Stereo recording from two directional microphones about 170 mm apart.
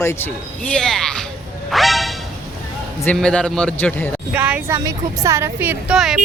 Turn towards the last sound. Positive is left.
turn(degrees=-5)  # may be behind; listen again after turning